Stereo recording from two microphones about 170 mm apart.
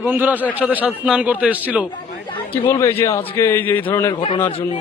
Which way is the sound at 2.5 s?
15° left (ahead or behind).